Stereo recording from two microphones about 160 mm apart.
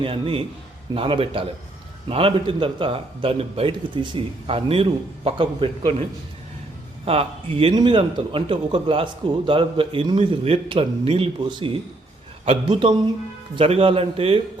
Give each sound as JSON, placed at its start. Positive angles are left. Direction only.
{"t": 0.0, "sound": "a man's voice", "side_deg": -35}
{"t": 7.0, "sound": "a man's voice", "side_deg": -35}